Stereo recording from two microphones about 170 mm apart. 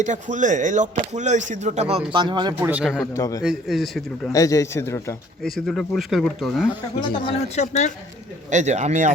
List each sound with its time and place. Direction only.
0.0 s speech: 45° right (ahead or behind)
2.1 s speech: 25° right (ahead or behind)
2.6 s speech: 5° right (ahead or behind)
3.1 s a man's voice: 20° left (ahead or behind)
3.4 s speech: centre (ahead or behind)
4.3 s a man's voice: 20° left (ahead or behind)
5.5 s speech: 5° left (ahead or behind)
7.0 s a man's voice: 30° left (ahead or behind)
7.5 s speech: 40° left (ahead or behind)
8.4 s speech: 45° right (ahead or behind)